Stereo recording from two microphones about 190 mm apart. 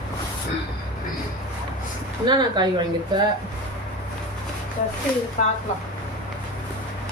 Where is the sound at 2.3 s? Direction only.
25° right (ahead or behind).